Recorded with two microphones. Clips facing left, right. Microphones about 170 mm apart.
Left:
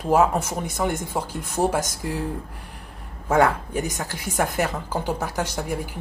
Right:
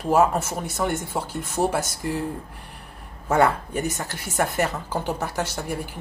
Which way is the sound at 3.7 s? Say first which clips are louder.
Even; 10° left (ahead or behind).